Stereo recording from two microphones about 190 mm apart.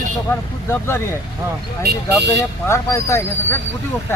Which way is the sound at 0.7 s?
15° left (ahead or behind).